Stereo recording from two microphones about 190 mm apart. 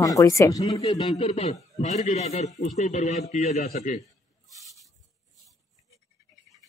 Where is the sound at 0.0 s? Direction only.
15° left (ahead or behind); by 4.0 s 45° left (ahead or behind).